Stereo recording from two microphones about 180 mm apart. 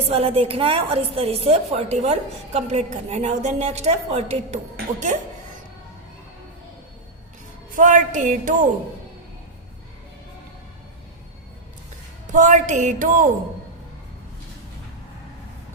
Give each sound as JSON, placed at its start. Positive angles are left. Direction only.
{"t": 0.0, "sound": "a woman's voice", "side_deg": -35}
{"t": 7.8, "sound": "a woman's voice", "side_deg": -45}
{"t": 12.3, "sound": "a woman's voice", "side_deg": -45}